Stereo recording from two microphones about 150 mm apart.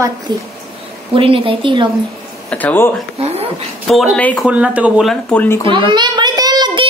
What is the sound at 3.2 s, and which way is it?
Speech, 45° right (ahead or behind).